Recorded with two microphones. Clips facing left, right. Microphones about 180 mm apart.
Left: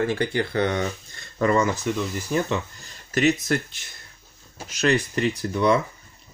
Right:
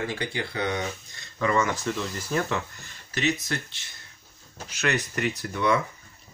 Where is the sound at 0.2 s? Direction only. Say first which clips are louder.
Left 7 dB; 50° left (ahead or behind).